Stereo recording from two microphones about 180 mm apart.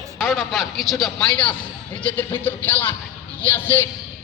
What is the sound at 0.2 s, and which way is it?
A man's voice, centre (ahead or behind).